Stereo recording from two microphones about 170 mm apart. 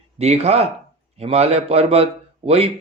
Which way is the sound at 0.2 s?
40° right (ahead or behind).